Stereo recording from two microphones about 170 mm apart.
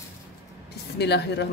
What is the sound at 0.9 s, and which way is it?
Speech, 80° left.